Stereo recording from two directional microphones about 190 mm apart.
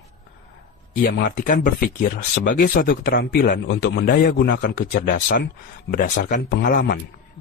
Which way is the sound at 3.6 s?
70° left (ahead or behind).